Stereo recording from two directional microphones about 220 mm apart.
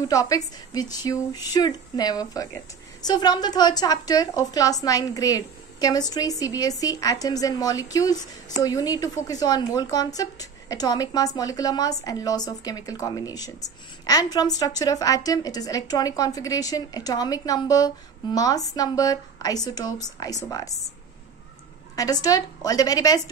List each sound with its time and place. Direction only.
0.1 s a woman's voice: 15° left (ahead or behind)
21.9 s a woman's voice: 15° left (ahead or behind)